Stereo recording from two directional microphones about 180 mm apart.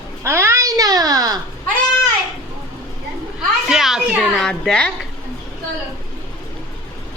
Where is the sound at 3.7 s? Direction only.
Centre (ahead or behind).